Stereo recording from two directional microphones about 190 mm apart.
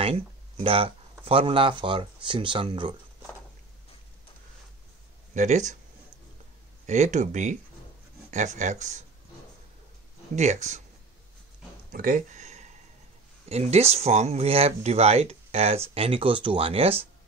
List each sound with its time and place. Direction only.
0.7 s speech: 30° right (ahead or behind)
5.3 s speech: 40° right (ahead or behind)
6.9 s speech: 40° right (ahead or behind)
10.3 s speech: 35° right (ahead or behind)
11.9 s a sound: 45° right (ahead or behind)
13.5 s speech: 35° right (ahead or behind)